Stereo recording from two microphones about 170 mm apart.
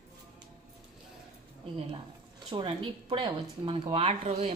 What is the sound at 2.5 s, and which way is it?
Speech, 30° right (ahead or behind).